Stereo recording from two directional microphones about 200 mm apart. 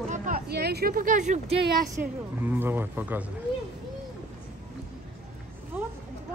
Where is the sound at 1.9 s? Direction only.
10° right (ahead or behind).